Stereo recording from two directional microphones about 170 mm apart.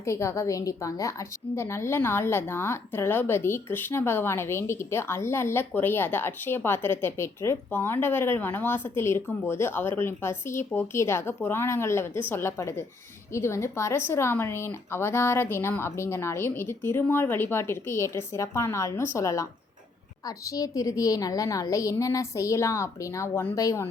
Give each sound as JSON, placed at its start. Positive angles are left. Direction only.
{"t": 0.0, "sound": "a woman's voice", "side_deg": 15}